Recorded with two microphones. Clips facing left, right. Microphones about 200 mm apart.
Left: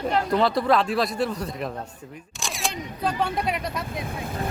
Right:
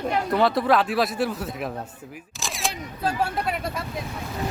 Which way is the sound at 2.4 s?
Centre (ahead or behind).